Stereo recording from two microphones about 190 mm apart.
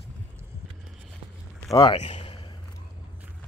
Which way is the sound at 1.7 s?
20° left (ahead or behind).